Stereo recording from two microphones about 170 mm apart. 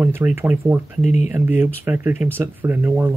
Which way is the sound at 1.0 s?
45° left (ahead or behind).